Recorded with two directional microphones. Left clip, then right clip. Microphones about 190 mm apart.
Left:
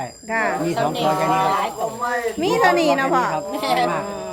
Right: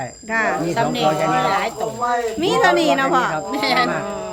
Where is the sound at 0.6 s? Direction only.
50° right (ahead or behind).